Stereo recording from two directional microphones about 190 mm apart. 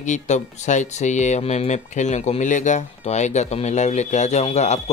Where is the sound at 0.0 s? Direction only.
40° left (ahead or behind).